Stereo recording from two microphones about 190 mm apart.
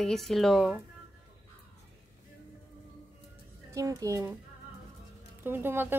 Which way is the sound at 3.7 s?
15° right (ahead or behind).